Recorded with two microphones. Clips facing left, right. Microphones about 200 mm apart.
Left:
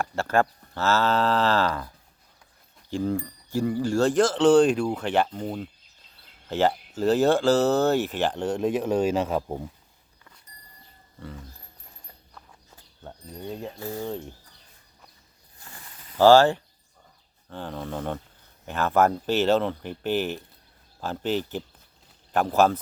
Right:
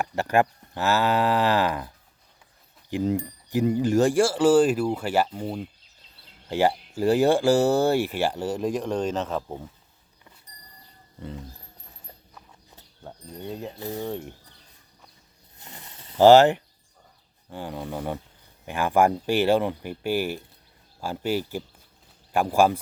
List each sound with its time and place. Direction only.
0.0 s speech: 15° right (ahead or behind)
2.9 s speech: 20° right (ahead or behind); by 9.6 s 10° left (ahead or behind)
11.2 s speech: 20° right (ahead or behind)
13.1 s speech: centre (ahead or behind)
13.7 s speech: 20° right (ahead or behind)
15.5 s mechanisms: 20° right (ahead or behind)
17.5 s speech: 10° right (ahead or behind)